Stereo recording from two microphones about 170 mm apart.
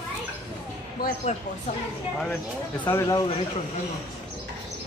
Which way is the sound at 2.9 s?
20° left (ahead or behind).